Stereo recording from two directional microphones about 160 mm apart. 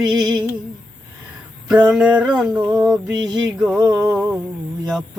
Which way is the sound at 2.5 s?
20° right (ahead or behind).